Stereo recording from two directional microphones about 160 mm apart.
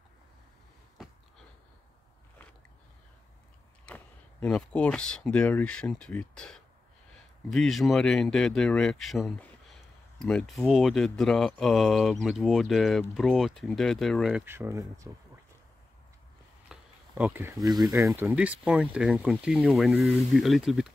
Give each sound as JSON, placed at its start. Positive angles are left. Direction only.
{"t": 3.8, "sound": "speech", "side_deg": 5}
{"t": 14.4, "sound": "speech", "side_deg": -15}
{"t": 16.7, "sound": "a sound", "side_deg": -5}
{"t": 17.2, "sound": "speech", "side_deg": -15}
{"t": 17.6, "sound": "speech", "side_deg": -25}
{"t": 18.2, "sound": "speech", "side_deg": -10}